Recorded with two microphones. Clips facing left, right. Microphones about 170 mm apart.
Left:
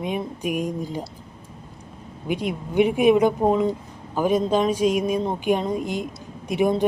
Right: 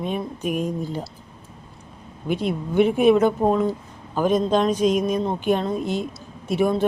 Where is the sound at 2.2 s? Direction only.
15° left (ahead or behind).